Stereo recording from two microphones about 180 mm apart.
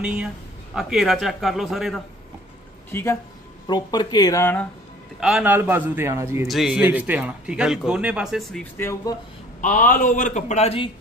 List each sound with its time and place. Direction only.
0.7 s speech: centre (ahead or behind)
2.9 s speech: 15° left (ahead or behind)
3.6 s speech: 25° left (ahead or behind)
5.2 s a man's voice: 5° right (ahead or behind)
6.4 s speech: centre (ahead or behind)
8.7 s speech: 15° left (ahead or behind)
9.6 s a man's voice: 45° left (ahead or behind)